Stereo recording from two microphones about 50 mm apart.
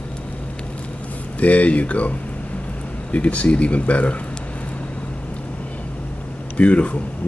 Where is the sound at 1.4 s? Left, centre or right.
Left.